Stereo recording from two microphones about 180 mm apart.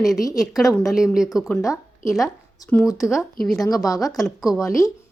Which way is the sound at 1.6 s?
15° left (ahead or behind).